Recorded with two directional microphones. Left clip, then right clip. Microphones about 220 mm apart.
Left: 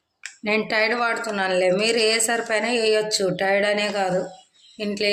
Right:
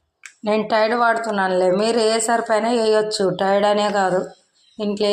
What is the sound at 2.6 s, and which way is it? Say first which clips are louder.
Speech: right 3 dB; 15° right (ahead or behind).